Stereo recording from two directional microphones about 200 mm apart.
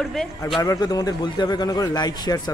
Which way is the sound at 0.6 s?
20° left (ahead or behind).